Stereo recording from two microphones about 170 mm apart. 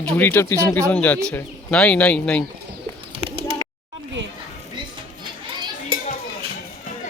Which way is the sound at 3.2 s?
35° right (ahead or behind).